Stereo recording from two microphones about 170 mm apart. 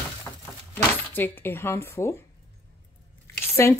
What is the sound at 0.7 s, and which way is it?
Speech, 10° left (ahead or behind).